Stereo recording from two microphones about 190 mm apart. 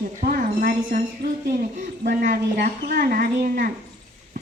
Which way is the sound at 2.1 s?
50° right (ahead or behind).